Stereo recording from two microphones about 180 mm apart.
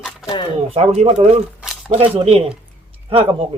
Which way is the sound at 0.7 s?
35° right (ahead or behind).